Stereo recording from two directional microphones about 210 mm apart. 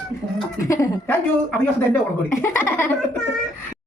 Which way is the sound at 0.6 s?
15° left (ahead or behind).